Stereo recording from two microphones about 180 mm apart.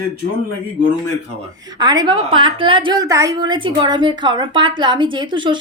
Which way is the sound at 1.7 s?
25° right (ahead or behind).